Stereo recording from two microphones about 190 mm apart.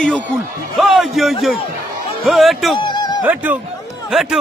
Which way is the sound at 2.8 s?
25° left (ahead or behind).